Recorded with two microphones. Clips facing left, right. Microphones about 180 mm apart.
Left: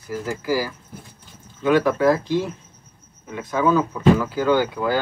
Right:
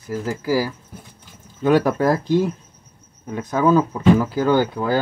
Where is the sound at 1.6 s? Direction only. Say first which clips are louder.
Right 1 dB; 45° right (ahead or behind).